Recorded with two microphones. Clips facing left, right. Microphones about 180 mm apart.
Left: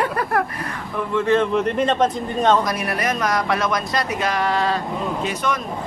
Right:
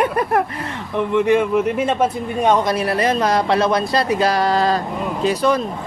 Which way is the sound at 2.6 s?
30° right (ahead or behind).